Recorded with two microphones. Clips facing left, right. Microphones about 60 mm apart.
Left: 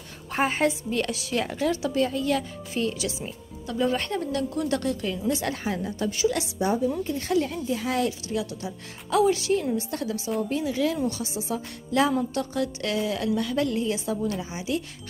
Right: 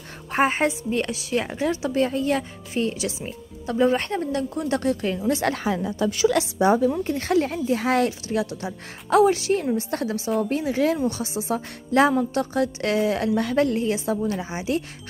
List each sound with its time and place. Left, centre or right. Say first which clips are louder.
0.3 s a woman's voice: right 3 dB; right
5.7 s a woman's voice: right 4 dB; right
7.0 s a woman's voice: right 3 dB; right